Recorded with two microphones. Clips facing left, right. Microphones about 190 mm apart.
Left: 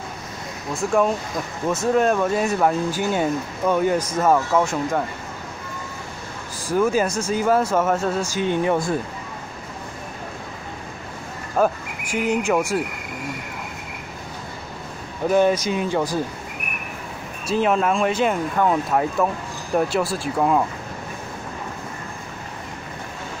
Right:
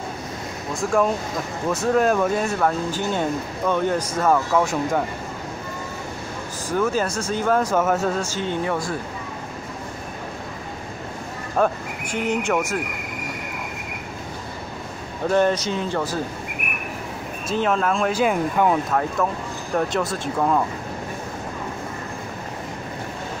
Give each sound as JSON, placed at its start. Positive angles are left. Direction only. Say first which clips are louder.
{"t": 2.0, "sound": "speech", "louder": "even", "side_deg": 0}
{"t": 6.7, "sound": "speech", "louder": "left 3 dB", "side_deg": 10}
{"t": 8.2, "sound": "speech", "louder": "left 3 dB", "side_deg": 15}
{"t": 11.6, "sound": "speech", "louder": "left 1 dB", "side_deg": 5}
{"t": 15.2, "sound": "speech", "louder": "left 2 dB", "side_deg": 10}
{"t": 17.6, "sound": "speech", "louder": "left 2 dB", "side_deg": 5}
{"t": 19.7, "sound": "speech", "louder": "left 2 dB", "side_deg": 5}